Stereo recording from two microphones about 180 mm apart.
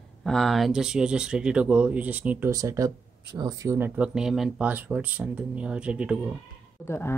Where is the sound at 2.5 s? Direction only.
20° right (ahead or behind).